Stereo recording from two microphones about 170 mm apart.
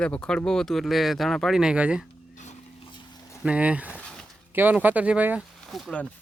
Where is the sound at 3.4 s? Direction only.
5° right (ahead or behind).